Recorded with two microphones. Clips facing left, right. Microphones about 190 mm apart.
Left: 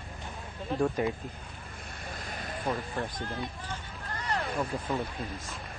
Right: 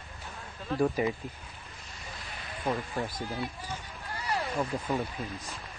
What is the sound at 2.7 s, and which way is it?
Speech, 5° right (ahead or behind).